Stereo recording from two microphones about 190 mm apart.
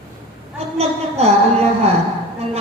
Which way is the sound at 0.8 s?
35° right (ahead or behind).